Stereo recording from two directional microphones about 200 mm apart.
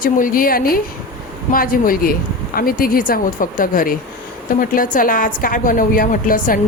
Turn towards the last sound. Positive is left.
turn(degrees=45)  # may be behind; listen again after turning